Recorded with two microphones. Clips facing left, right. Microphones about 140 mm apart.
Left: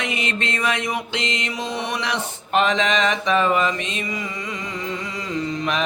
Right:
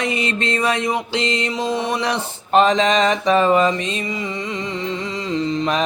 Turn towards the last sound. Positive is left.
turn(degrees=-30)  # may be behind; listen again after turning